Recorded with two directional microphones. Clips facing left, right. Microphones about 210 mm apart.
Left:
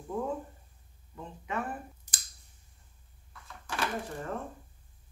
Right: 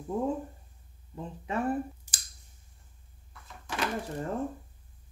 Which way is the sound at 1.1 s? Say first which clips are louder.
Right 4 dB; 30° right (ahead or behind).